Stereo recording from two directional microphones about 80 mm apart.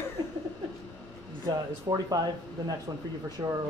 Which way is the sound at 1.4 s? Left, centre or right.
Right.